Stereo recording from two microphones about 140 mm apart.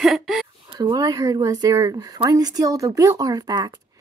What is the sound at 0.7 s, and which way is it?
Speech, 30° right (ahead or behind).